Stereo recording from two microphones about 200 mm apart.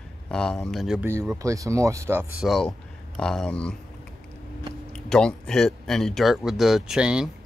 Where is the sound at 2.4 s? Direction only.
Centre (ahead or behind).